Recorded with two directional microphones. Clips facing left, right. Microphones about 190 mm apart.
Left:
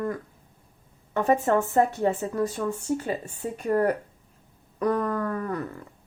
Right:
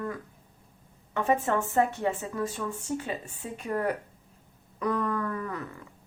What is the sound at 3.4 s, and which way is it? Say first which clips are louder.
Speech: left 6 dB; 40° left (ahead or behind).